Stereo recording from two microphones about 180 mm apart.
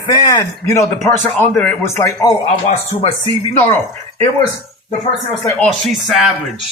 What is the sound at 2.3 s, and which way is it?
Speech, 30° left (ahead or behind).